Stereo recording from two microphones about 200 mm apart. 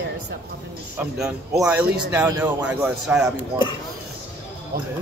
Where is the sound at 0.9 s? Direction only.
5° right (ahead or behind).